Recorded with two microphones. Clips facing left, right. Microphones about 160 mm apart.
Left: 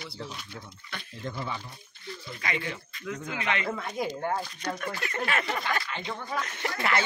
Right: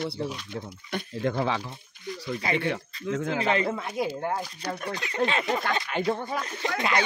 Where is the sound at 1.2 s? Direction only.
80° right.